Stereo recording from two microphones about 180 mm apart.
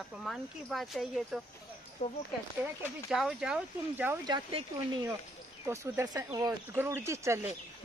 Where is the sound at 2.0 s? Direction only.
35° left (ahead or behind).